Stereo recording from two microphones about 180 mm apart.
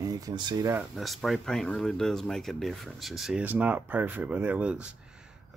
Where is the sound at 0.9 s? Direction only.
Centre (ahead or behind).